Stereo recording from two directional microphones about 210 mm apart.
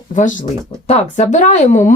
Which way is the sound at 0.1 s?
35° left (ahead or behind).